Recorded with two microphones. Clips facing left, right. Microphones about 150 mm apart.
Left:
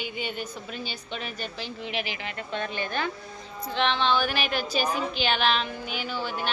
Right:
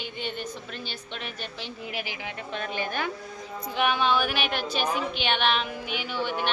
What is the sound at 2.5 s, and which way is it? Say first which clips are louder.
A woman's voice: left 1 dB; 5° right (ahead or behind).